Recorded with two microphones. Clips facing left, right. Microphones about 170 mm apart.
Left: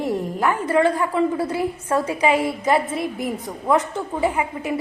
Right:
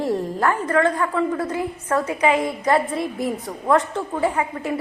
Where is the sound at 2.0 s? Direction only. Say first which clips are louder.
Even; 30° left (ahead or behind).